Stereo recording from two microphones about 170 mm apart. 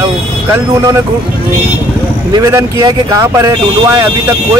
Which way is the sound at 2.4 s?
20° right (ahead or behind).